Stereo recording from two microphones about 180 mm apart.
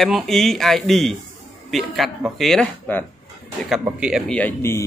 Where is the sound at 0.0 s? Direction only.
Centre (ahead or behind).